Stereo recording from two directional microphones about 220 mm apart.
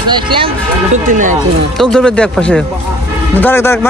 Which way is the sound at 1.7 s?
Centre (ahead or behind).